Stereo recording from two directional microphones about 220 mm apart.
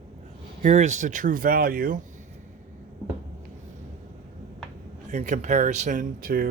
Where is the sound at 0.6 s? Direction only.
30° right (ahead or behind).